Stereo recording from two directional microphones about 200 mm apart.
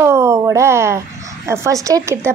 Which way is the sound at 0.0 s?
15° right (ahead or behind).